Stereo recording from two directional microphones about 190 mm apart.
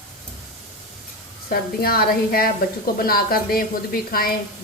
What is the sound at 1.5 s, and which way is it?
A woman's voice, 50° left (ahead or behind).